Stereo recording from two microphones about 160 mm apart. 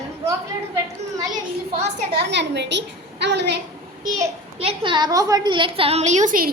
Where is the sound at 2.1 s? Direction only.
90° right.